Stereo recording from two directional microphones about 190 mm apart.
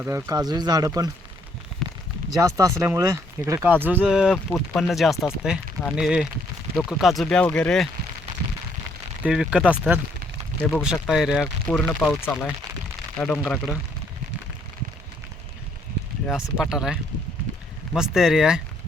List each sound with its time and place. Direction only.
0.0 s speech: 15° right (ahead or behind)
1.8 s a sound: centre (ahead or behind)
2.3 s speech: 15° right (ahead or behind); by 7.9 s 5° left (ahead or behind)
9.2 s speech: 5° right (ahead or behind)
10.6 s speech: 10° left (ahead or behind)
11.1 s speech: 5° right (ahead or behind)
11.7 s speech: 10° left (ahead or behind)
16.2 s speech: 5° right (ahead or behind)